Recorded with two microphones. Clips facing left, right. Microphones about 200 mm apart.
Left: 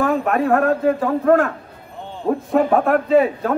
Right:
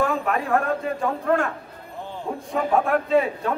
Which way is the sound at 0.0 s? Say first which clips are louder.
Left 5 dB; 50° left (ahead or behind).